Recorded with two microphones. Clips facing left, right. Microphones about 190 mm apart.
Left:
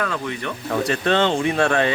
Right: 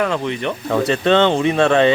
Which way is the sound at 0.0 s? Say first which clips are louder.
Right 6 dB; 25° right (ahead or behind).